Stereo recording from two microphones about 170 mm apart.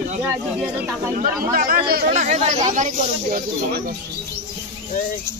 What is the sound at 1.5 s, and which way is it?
Speech, 55° right (ahead or behind).